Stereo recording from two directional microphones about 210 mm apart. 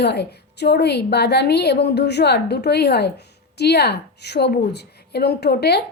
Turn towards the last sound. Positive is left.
turn(degrees=50)  # may be behind; listen again after turning